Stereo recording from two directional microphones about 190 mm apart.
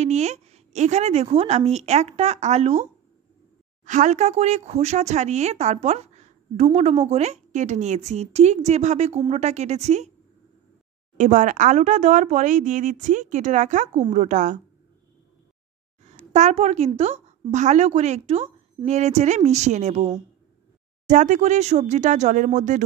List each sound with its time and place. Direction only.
0.0 s speech: 35° right (ahead or behind)
11.1 s speech: 40° right (ahead or behind)
16.3 s speech: 35° right (ahead or behind)
21.1 s speech: 40° right (ahead or behind)